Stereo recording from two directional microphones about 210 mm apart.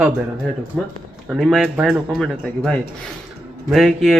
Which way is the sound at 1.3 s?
Centre (ahead or behind).